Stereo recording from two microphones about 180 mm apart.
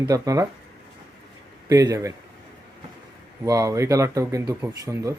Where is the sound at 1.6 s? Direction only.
20° right (ahead or behind).